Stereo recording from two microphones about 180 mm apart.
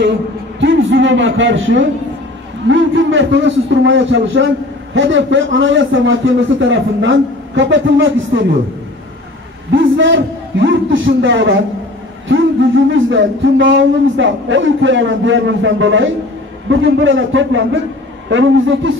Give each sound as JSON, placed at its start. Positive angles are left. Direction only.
{"t": 0.0, "sound": "a man's voice", "side_deg": -85}
{"t": 9.7, "sound": "a man's voice", "side_deg": -90}